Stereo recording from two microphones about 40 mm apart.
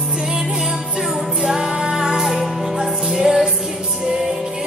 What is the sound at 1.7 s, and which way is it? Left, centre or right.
Music, centre.